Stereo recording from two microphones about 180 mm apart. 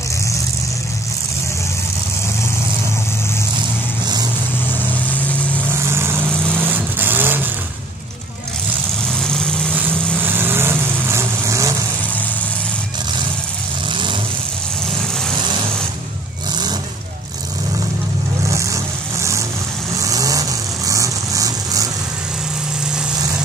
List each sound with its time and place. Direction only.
5.7 s vehicle: 15° right (ahead or behind)
9.1 s vehicle: 5° left (ahead or behind)
10.2 s vehicle: 10° right (ahead or behind)
18.5 s vehicle: 15° right (ahead or behind)
20.0 s vehicle: 20° right (ahead or behind)